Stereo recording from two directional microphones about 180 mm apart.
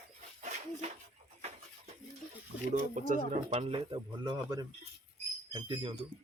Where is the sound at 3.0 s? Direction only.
45° right (ahead or behind); by 5.9 s 30° right (ahead or behind).